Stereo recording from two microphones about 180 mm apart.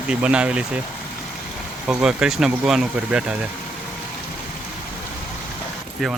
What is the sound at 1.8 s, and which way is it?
Speech, 5° right (ahead or behind).